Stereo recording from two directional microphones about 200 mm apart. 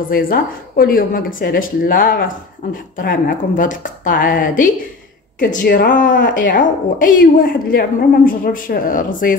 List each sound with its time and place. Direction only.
0.1 s a woman's voice: 45° left (ahead or behind)
6.1 s speech: 60° left (ahead or behind)
6.5 s a woman's voice: 40° left (ahead or behind)